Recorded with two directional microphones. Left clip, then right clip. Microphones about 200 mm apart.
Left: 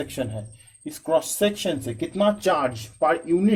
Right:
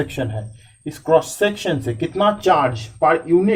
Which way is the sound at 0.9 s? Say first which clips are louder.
Right 7 dB; 45° left (ahead or behind).